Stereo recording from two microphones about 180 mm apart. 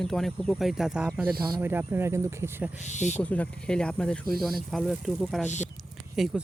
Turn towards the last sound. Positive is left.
turn(degrees=0)  # may be behind; listen again after turning